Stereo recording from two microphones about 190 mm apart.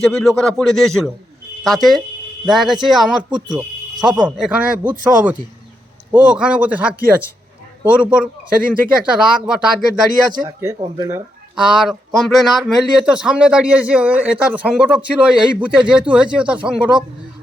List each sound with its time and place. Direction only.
0.0 s a man's voice: centre (ahead or behind)
10.4 s a man's voice: 15° right (ahead or behind)
11.5 s a man's voice: 5° right (ahead or behind)